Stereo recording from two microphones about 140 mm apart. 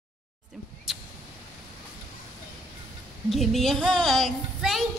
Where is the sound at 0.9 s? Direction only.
Centre (ahead or behind).